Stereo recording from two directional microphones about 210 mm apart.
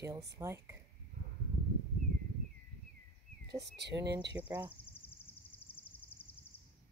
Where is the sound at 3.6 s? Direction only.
55° right (ahead or behind).